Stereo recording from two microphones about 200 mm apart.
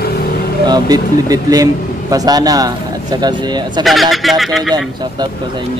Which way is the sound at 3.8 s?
Centre (ahead or behind).